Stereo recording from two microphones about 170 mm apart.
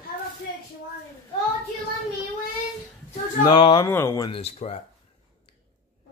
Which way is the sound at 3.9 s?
15° left (ahead or behind).